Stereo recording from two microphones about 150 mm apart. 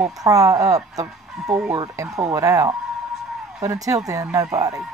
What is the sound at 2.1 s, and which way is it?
A woman's voice, 20° right (ahead or behind).